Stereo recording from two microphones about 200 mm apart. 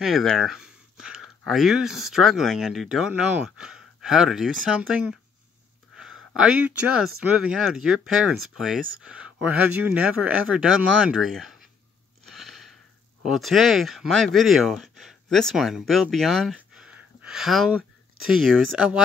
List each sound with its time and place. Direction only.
0.0 s speech: centre (ahead or behind)
6.3 s speech: 5° right (ahead or behind)
12.3 s a sound: centre (ahead or behind)
13.2 s speech: centre (ahead or behind)